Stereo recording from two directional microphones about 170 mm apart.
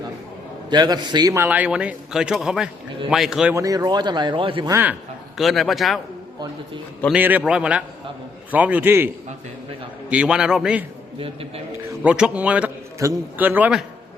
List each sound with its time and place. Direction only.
0.7 s a man's voice: 25° right (ahead or behind); by 3.5 s centre (ahead or behind)
3.5 s speech: 20° right (ahead or behind)
4.7 s a man's voice: 10° right (ahead or behind)
5.4 s a man's voice: centre (ahead or behind)
7.1 s a man's voice: 10° right (ahead or behind)
10.1 s a man's voice: 5° right (ahead or behind)
11.2 s a man's voice: 35° right (ahead or behind)
12.0 s a man's voice: 5° right (ahead or behind)